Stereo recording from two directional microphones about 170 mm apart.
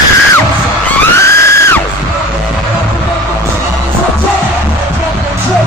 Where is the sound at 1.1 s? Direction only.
15° left (ahead or behind).